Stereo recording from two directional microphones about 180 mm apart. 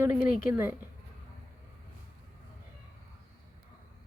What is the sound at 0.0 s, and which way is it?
Speech, 10° right (ahead or behind).